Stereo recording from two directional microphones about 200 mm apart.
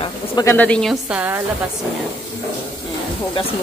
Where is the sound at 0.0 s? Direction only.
15° left (ahead or behind); by 1.4 s 5° right (ahead or behind).